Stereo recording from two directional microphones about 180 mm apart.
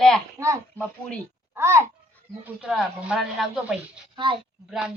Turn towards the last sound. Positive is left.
turn(degrees=0)  # may be behind; listen again after turning